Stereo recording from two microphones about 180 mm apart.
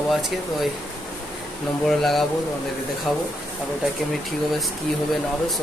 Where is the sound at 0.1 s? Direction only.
Centre (ahead or behind).